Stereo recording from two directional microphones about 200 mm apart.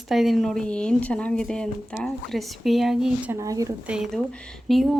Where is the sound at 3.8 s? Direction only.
5° right (ahead or behind).